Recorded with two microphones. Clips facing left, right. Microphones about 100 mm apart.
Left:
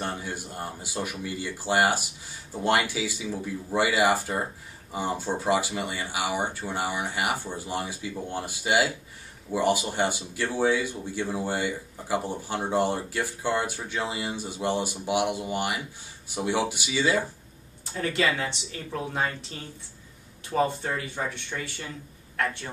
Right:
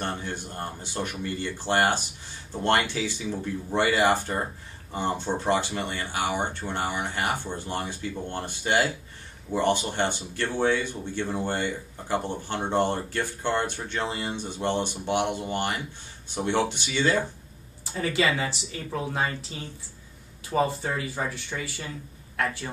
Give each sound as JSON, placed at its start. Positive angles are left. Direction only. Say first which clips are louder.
{"t": 0.0, "sound": "speech", "louder": "right 1 dB", "side_deg": 10}